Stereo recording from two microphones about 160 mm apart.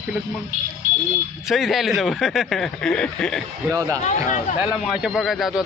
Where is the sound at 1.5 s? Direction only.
Centre (ahead or behind).